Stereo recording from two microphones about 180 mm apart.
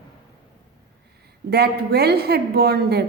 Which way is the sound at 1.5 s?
60° right (ahead or behind).